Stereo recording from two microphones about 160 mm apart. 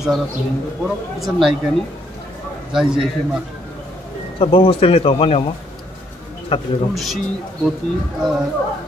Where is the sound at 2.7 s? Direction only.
5° right (ahead or behind).